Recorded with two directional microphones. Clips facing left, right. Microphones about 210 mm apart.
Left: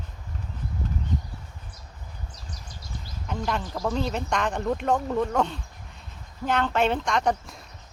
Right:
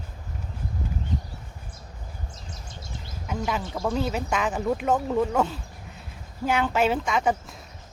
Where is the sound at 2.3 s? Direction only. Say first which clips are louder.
Right 2 dB; 25° right (ahead or behind).